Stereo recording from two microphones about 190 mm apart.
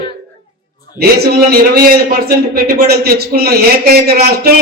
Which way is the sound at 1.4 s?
50° right (ahead or behind).